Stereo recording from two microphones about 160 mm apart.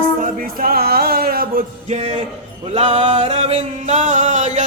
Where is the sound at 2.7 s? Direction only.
40° right (ahead or behind).